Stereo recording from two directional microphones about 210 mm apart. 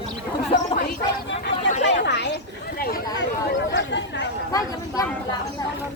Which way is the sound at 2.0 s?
55° left (ahead or behind).